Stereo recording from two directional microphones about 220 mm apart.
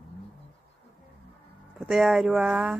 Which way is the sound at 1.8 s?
Centre (ahead or behind).